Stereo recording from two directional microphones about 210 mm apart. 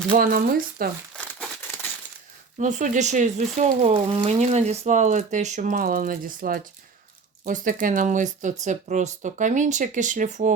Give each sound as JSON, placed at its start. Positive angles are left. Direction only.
{"t": 0.2, "sound": "speech", "side_deg": -45}
{"t": 1.1, "sound": "crumpling", "side_deg": 5}
{"t": 2.6, "sound": "speech", "side_deg": -35}